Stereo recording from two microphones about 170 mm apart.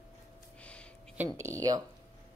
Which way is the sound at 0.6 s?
5° left (ahead or behind).